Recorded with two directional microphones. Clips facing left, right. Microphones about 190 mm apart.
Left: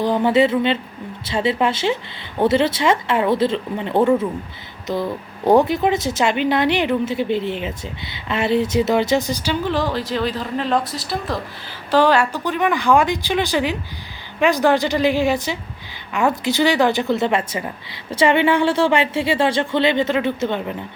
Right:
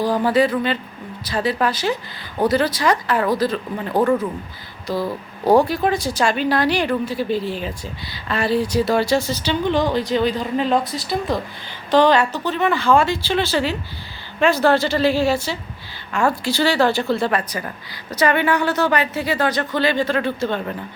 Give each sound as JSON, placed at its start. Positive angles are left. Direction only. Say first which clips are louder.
{"t": 0.0, "sound": "speech", "louder": "left 1 dB", "side_deg": 20}